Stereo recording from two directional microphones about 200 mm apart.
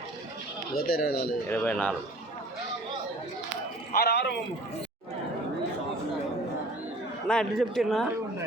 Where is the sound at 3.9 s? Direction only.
50° left (ahead or behind).